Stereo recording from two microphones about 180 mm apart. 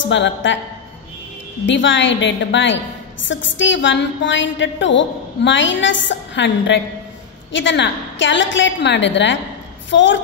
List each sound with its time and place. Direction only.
0.0 s a woman's voice: 90° left
1.7 s a woman's voice: 90° left